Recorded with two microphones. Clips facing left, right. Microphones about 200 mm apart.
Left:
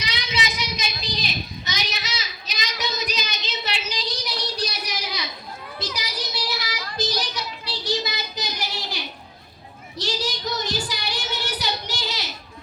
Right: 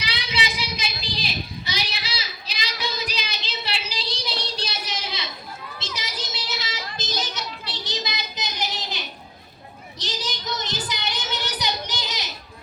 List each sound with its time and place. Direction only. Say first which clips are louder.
0.0 s a sound: left 1 dB; 30° right (ahead or behind)
1.6 s child singing: left 1 dB; 30° right (ahead or behind)
8.4 s child singing: right 2 dB; 20° right (ahead or behind)
10.0 s child singing: left 5 dB; 20° right (ahead or behind)